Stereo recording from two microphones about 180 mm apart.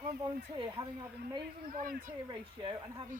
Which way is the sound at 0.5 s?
25° right (ahead or behind).